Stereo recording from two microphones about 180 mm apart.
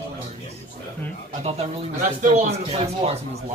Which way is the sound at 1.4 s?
35° right (ahead or behind).